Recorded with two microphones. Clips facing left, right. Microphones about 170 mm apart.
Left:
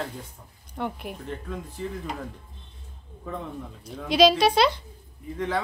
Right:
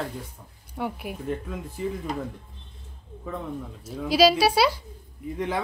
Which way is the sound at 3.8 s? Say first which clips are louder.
Even; 5° right (ahead or behind).